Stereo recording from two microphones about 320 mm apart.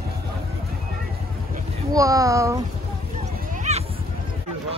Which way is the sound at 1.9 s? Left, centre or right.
Centre.